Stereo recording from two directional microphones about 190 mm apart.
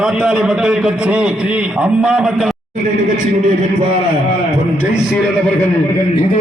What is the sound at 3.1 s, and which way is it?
Speech, 40° right (ahead or behind).